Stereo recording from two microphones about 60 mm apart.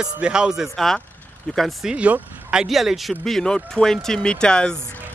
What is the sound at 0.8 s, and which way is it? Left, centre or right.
Speech, centre.